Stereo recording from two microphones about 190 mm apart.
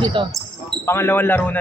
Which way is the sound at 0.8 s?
10° left (ahead or behind).